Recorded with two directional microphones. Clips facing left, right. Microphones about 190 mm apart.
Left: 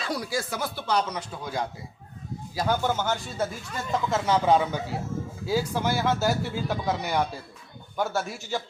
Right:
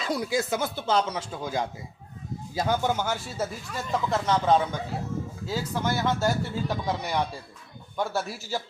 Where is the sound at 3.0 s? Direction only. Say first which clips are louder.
Left 2 dB; 10° right (ahead or behind).